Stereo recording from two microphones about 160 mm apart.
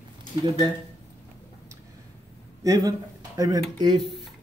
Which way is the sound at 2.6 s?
20° right (ahead or behind).